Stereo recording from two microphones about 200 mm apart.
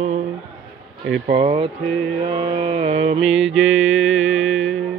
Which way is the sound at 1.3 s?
30° right (ahead or behind).